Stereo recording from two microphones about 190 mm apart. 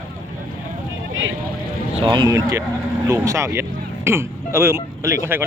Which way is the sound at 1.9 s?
25° right (ahead or behind).